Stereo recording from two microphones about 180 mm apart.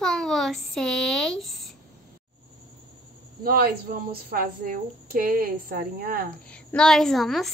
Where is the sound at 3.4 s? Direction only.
50° right (ahead or behind).